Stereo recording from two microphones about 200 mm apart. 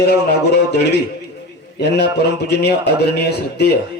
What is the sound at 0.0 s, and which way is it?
A man's voice, 55° left (ahead or behind).